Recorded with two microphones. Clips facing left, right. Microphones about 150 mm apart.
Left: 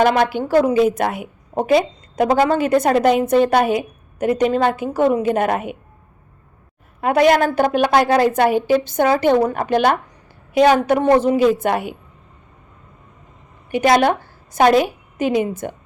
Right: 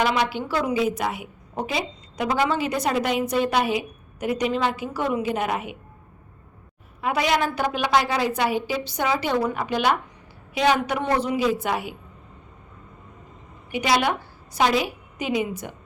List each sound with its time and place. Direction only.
0.0 s a woman's voice: 50° left (ahead or behind)
7.0 s a woman's voice: 50° left (ahead or behind)
13.7 s a woman's voice: 50° left (ahead or behind)